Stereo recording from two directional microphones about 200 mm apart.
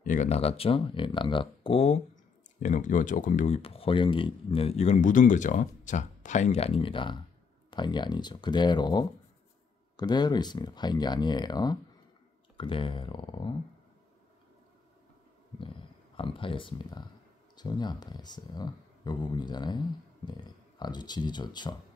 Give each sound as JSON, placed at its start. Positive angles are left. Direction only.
{"t": 0.0, "sound": "speech", "side_deg": 40}
{"t": 15.6, "sound": "speech", "side_deg": 25}